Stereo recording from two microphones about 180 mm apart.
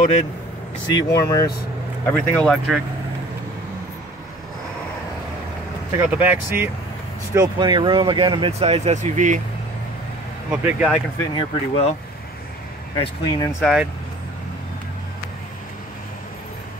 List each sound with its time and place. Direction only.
0.9 s speech: 20° left (ahead or behind)
2.0 s speech: 5° left (ahead or behind)
5.9 s speech: 10° right (ahead or behind)
7.3 s speech: 25° right (ahead or behind); by 9.4 s 45° right (ahead or behind)
10.5 s speech: 5° right (ahead or behind)
11.1 s speech: 30° left (ahead or behind)
12.9 s speech: 25° left (ahead or behind)
13.6 s speech: centre (ahead or behind)